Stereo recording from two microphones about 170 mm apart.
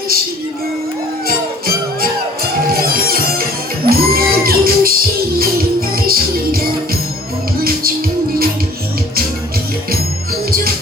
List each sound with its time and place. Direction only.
2.7 s music: 60° right (ahead or behind)
6.1 s music: 60° right (ahead or behind)